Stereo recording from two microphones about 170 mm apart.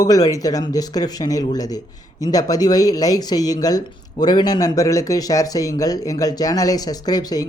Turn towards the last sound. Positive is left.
turn(degrees=20)  # may be behind; listen again after turning